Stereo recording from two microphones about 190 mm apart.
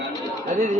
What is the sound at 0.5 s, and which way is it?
Speech, 40° right (ahead or behind).